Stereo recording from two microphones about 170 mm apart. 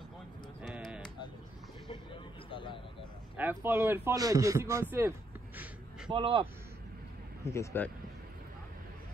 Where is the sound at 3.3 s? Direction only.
10° right (ahead or behind).